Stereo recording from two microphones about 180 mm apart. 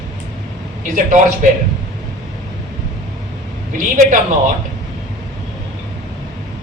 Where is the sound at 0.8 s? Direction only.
45° right (ahead or behind).